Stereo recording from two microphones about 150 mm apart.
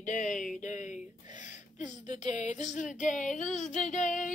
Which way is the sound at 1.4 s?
55° left (ahead or behind).